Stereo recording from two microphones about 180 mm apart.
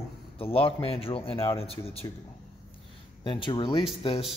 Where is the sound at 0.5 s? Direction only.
30° left (ahead or behind).